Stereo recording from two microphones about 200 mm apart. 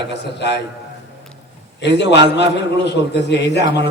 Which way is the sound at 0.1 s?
60° left (ahead or behind).